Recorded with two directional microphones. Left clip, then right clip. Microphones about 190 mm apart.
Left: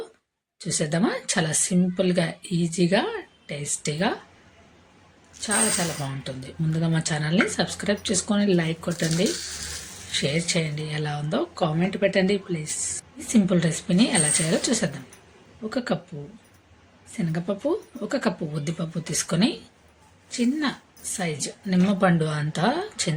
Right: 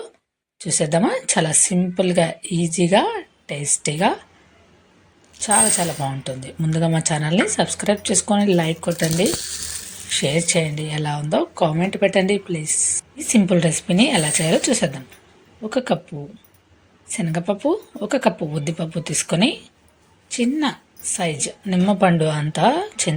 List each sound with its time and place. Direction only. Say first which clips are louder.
0.6 s speech: right 6 dB; 15° right (ahead or behind)
5.5 s a woman's voice: right 6 dB; 15° right (ahead or behind)
17.2 s a woman's voice: right 6 dB; 15° right (ahead or behind)